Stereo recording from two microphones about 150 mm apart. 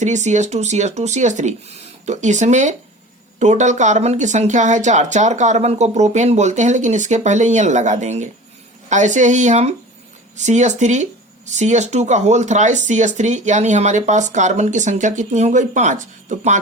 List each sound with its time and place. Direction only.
0.0 s speech: 50° right (ahead or behind)